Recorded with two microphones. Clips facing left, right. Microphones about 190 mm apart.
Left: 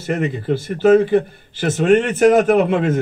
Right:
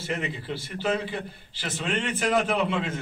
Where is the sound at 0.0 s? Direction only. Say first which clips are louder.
Left 10 dB; 50° left (ahead or behind).